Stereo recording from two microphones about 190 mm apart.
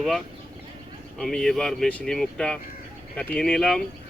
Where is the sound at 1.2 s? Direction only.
Centre (ahead or behind).